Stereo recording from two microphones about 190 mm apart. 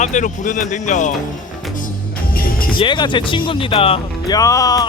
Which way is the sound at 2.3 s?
50° left (ahead or behind).